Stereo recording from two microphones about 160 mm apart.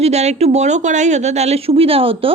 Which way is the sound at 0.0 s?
45° right (ahead or behind).